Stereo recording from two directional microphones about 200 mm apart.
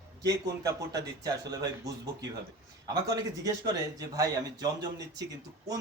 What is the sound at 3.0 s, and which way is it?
A man's voice, 20° right (ahead or behind).